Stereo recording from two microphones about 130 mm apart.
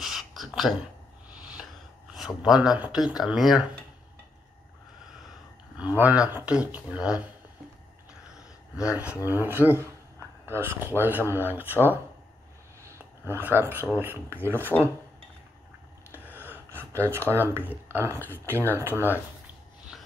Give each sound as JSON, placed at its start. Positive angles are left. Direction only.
{"t": 0.0, "sound": "a sound", "side_deg": 0}
{"t": 2.1, "sound": "speech", "side_deg": -5}
{"t": 5.8, "sound": "speech", "side_deg": -10}
{"t": 8.4, "sound": "a sound", "side_deg": -5}
{"t": 9.0, "sound": "speech", "side_deg": -10}
{"t": 13.2, "sound": "speech", "side_deg": -15}
{"t": 16.3, "sound": "gasp", "side_deg": -15}
{"t": 17.3, "sound": "speech", "side_deg": -15}
{"t": 19.9, "sound": "dog", "side_deg": 0}